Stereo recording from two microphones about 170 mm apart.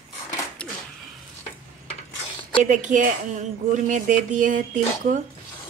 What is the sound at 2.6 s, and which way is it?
A woman's voice, 50° right (ahead or behind).